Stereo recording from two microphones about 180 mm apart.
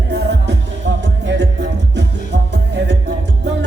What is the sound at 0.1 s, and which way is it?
Music, 75° right (ahead or behind).